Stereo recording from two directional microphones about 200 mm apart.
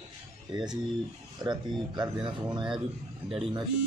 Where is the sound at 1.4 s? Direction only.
20° right (ahead or behind).